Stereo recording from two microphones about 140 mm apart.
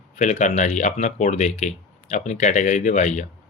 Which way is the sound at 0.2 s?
60° left (ahead or behind).